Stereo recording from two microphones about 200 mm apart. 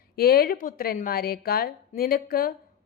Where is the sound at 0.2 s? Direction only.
50° left (ahead or behind).